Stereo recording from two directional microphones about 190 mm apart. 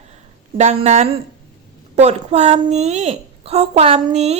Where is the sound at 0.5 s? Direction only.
35° right (ahead or behind).